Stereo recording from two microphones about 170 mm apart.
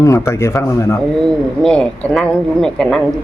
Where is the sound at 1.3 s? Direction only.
5° left (ahead or behind).